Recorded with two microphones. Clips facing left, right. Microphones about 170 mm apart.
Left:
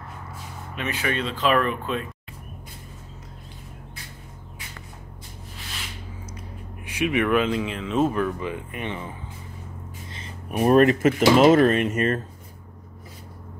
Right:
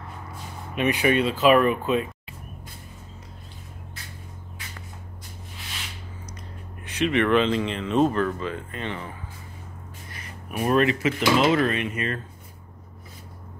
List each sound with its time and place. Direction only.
0.7 s speech: 15° right (ahead or behind)
6.8 s speech: 10° left (ahead or behind)
10.1 s a sound: 25° left (ahead or behind)
10.7 s speech: 45° left (ahead or behind)